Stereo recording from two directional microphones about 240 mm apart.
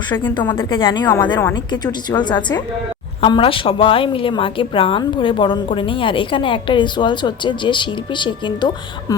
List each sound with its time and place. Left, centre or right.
0.3 s a woman's voice: centre
3.2 s a woman's voice: left